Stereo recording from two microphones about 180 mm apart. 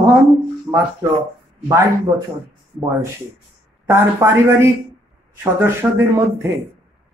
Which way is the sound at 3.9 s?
15° right (ahead or behind).